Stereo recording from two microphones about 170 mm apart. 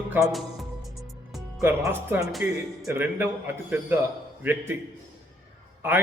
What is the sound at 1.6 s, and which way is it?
A man's voice, 15° right (ahead or behind).